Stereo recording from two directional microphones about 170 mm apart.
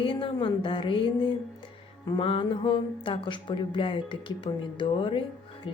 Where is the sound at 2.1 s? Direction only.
30° left (ahead or behind).